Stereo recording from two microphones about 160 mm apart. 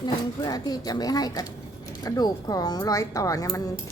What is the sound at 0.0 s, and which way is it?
Speech, 25° left (ahead or behind).